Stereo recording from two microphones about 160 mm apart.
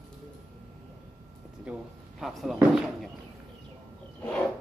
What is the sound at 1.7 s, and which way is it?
Speech, 5° right (ahead or behind).